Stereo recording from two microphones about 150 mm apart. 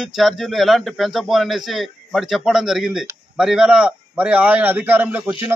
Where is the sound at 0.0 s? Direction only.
Centre (ahead or behind).